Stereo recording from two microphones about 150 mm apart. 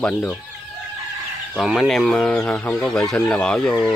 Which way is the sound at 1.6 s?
Centre (ahead or behind).